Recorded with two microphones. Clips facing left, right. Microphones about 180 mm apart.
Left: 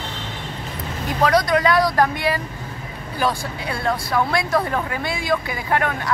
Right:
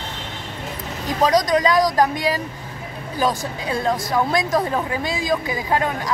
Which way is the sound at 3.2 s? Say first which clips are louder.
Right 1 dB; 15° right (ahead or behind).